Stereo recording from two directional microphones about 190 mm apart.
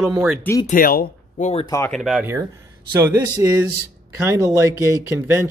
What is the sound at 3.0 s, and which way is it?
Speech, 15° right (ahead or behind).